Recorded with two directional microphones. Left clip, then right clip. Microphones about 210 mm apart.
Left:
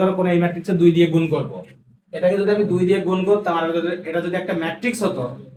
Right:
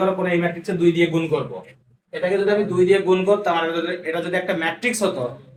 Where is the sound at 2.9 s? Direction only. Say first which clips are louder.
Right 2 dB; 35° right (ahead or behind).